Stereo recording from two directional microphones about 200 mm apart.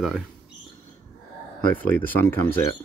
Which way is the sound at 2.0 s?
10° left (ahead or behind).